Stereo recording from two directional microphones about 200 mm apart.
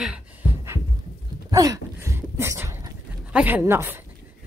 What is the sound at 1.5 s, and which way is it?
Pant, 15° right (ahead or behind).